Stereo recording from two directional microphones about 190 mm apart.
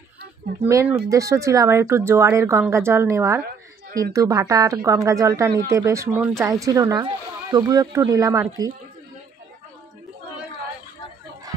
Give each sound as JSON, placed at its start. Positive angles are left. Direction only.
{"t": 0.7, "sound": "speech", "side_deg": -15}